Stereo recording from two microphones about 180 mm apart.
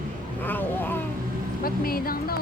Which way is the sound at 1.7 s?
55° left (ahead or behind).